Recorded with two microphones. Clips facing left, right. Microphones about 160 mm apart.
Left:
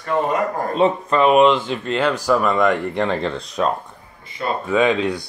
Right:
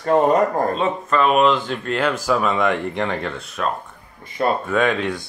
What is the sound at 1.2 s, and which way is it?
Speech, 10° left (ahead or behind).